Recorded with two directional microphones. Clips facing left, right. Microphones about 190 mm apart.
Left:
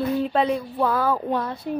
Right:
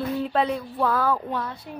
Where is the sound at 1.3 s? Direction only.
45° left (ahead or behind).